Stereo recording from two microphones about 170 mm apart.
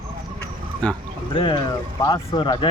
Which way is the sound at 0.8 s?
5° left (ahead or behind).